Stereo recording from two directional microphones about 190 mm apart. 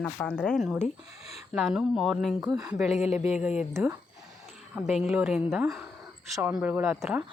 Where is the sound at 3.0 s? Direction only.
35° left (ahead or behind).